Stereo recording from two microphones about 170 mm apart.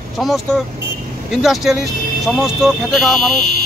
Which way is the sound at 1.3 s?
Centre (ahead or behind).